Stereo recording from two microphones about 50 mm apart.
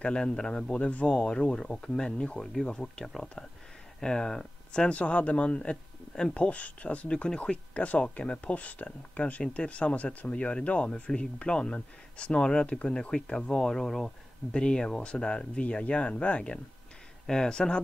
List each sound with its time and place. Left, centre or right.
0.0 s speech: centre